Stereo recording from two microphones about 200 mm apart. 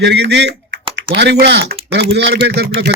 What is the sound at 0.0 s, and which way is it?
Speech, 60° right (ahead or behind).